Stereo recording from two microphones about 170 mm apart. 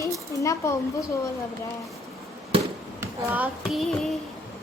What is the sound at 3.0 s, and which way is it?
Speech, 10° right (ahead or behind).